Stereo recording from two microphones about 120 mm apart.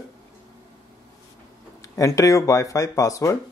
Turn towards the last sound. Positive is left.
turn(degrees=25)  # may be behind; listen again after turning